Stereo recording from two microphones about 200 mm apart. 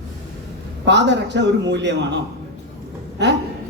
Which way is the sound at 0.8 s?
60° right (ahead or behind).